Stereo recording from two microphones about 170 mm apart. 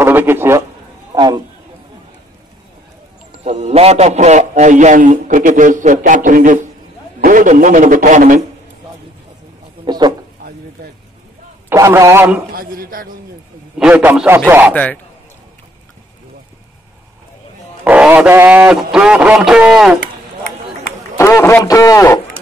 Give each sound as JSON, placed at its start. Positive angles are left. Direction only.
{"t": 0.0, "sound": "a man's voice", "side_deg": -10}
{"t": 1.1, "sound": "a man's voice", "side_deg": -25}
{"t": 3.4, "sound": "a man's voice", "side_deg": -40}
{"t": 9.8, "sound": "a sound", "side_deg": -25}
{"t": 11.7, "sound": "speech", "side_deg": -15}
{"t": 12.5, "sound": "speech", "side_deg": -60}
{"t": 13.7, "sound": "speech", "side_deg": -5}
{"t": 14.7, "sound": "a man's voice", "side_deg": 10}
{"t": 17.8, "sound": "speech", "side_deg": -10}
{"t": 21.2, "sound": "a man's voice", "side_deg": 15}